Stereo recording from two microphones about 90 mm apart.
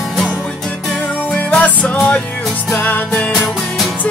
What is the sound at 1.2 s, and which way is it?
Music, 15° left (ahead or behind).